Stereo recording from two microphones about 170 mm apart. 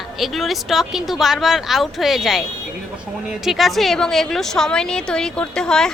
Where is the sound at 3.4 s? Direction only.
Centre (ahead or behind).